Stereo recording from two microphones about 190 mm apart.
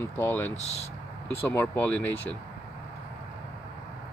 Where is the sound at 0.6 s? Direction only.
35° left (ahead or behind).